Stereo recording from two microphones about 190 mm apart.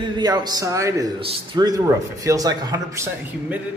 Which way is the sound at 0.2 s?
20° right (ahead or behind).